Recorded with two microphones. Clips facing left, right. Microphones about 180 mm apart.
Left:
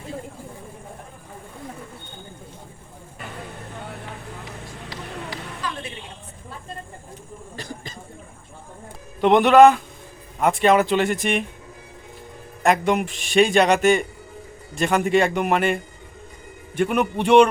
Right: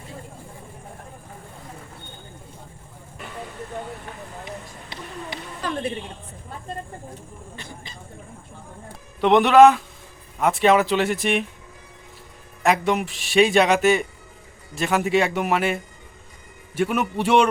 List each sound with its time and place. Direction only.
7.5 s a sound: 40° left (ahead or behind)
9.2 s a man's voice: centre (ahead or behind)
12.6 s a man's voice: centre (ahead or behind)